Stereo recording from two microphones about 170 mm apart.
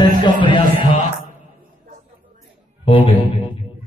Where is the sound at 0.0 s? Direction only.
25° left (ahead or behind).